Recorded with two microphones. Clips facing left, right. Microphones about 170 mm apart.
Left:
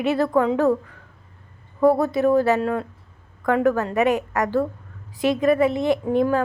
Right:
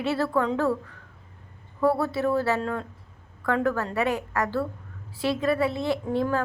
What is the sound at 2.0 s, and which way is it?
A woman's voice, 15° left (ahead or behind).